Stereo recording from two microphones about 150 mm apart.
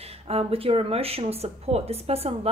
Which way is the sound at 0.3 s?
40° right (ahead or behind).